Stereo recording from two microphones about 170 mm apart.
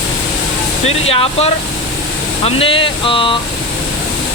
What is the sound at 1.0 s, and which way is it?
Speech, 35° left (ahead or behind).